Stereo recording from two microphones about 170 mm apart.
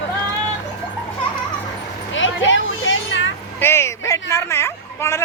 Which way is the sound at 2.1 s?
90° left.